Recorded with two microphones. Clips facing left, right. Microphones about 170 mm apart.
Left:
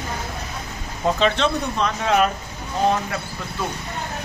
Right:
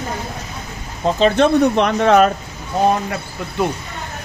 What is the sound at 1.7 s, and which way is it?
Speech, 65° right (ahead or behind).